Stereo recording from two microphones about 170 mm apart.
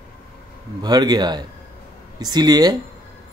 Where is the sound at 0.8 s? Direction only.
25° right (ahead or behind).